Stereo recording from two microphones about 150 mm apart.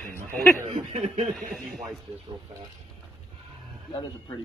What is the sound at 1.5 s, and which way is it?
Speech, centre (ahead or behind).